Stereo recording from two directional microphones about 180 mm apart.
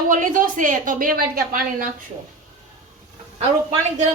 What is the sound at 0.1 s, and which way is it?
A woman's voice, 45° right (ahead or behind).